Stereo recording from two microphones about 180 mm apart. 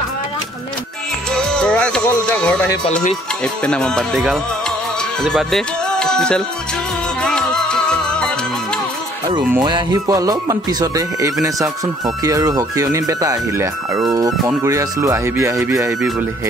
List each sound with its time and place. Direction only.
1.3 s music: 5° left (ahead or behind)
5.2 s speech: centre (ahead or behind)
7.2 s music: 5° left (ahead or behind)
9.5 s speech: 25° right (ahead or behind)